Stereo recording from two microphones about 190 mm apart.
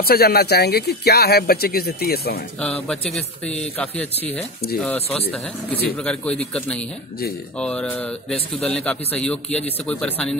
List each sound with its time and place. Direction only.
0.0 s speech: 55° left (ahead or behind)
2.6 s a man's voice: 5° left (ahead or behind)
6.0 s a man's voice: 5° left (ahead or behind)